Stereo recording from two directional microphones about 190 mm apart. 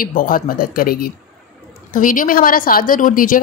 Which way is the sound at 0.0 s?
45° left (ahead or behind).